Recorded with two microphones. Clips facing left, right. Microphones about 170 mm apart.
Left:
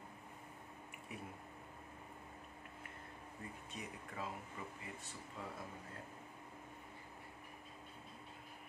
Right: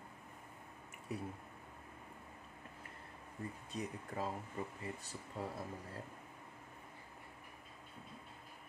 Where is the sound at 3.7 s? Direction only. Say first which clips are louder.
Right 6 dB; 40° right (ahead or behind).